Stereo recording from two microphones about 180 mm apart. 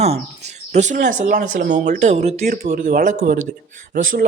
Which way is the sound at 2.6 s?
50° right (ahead or behind).